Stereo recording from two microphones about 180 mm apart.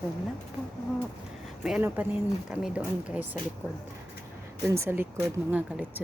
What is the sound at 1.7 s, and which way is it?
Speech, 10° right (ahead or behind).